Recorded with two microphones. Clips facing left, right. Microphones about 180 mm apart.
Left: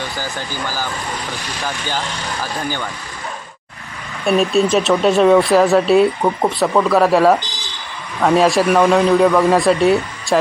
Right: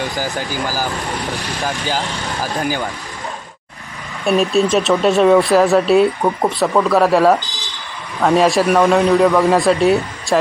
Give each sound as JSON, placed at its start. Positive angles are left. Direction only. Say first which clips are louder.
{"t": 0.2, "sound": "speech", "louder": "right 4 dB", "side_deg": -15}
{"t": 1.6, "sound": "speech", "louder": "right 3 dB", "side_deg": -10}
{"t": 4.3, "sound": "speech", "louder": "even", "side_deg": 0}